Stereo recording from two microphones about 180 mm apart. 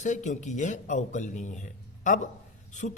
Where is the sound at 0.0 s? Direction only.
40° left (ahead or behind).